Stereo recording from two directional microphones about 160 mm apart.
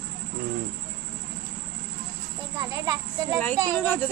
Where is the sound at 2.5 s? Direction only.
20° right (ahead or behind).